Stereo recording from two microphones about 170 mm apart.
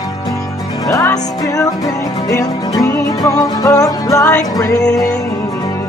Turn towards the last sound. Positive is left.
turn(degrees=5)  # may be behind; listen again after turning